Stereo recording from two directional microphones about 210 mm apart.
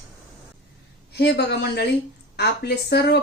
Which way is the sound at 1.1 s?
50° left (ahead or behind).